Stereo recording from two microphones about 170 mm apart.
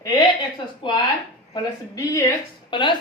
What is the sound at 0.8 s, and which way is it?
A woman's voice, 30° left (ahead or behind).